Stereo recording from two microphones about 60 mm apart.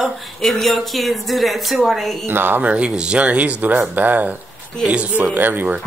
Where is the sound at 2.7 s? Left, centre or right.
Centre.